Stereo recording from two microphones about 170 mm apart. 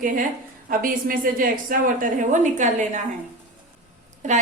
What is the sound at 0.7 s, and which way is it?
A woman's voice, 55° right (ahead or behind).